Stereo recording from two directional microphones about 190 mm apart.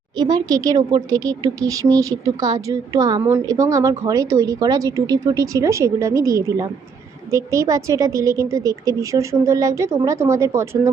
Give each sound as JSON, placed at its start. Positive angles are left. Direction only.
{"t": 0.2, "sound": "speech", "side_deg": -20}